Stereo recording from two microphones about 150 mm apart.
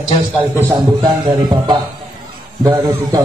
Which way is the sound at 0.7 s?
30° right (ahead or behind).